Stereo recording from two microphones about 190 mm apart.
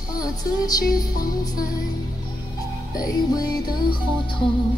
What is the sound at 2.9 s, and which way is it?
Music, 20° left (ahead or behind).